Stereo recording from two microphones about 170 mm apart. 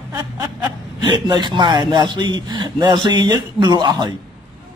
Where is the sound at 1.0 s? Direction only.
25° right (ahead or behind).